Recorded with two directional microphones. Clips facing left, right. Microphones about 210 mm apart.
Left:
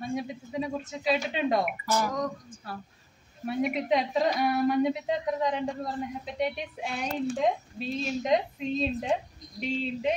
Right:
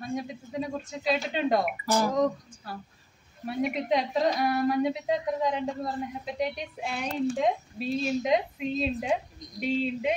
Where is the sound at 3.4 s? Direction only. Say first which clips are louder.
Left 1 dB; centre (ahead or behind).